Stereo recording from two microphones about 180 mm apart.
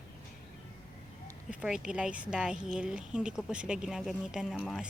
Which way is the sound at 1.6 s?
5° right (ahead or behind).